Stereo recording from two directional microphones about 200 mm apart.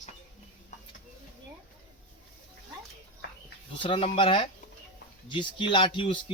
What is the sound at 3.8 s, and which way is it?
Speech, 25° left (ahead or behind).